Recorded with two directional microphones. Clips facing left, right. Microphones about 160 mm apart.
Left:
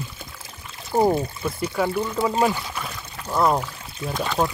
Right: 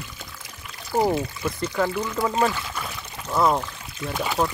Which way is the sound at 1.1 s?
30° left (ahead or behind).